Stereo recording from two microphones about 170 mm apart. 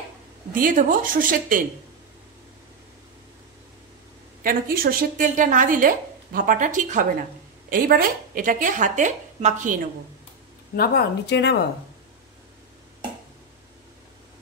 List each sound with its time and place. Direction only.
0.6 s a woman's voice: 50° right (ahead or behind)
4.4 s a woman's voice: 60° right (ahead or behind)
7.7 s a woman's voice: 55° right (ahead or behind)
10.8 s speech: 70° left (ahead or behind)